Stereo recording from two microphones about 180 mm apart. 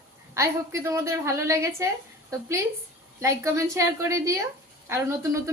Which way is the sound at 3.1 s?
15° right (ahead or behind).